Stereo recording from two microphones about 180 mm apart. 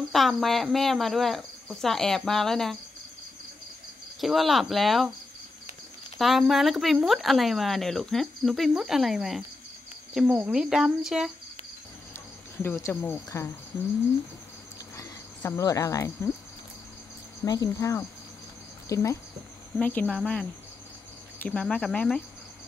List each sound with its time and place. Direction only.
0.1 s speech: centre (ahead or behind)
4.2 s speech: centre (ahead or behind)
6.1 s speech: centre (ahead or behind)
12.6 s speech: 15° left (ahead or behind)
15.0 s speech: 15° left (ahead or behind)
17.5 s speech: 20° left (ahead or behind)